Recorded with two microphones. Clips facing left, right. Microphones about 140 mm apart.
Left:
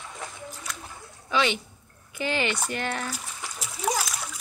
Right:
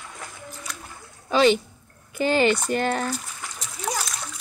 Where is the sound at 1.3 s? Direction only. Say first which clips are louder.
Right 7 dB; 35° right (ahead or behind).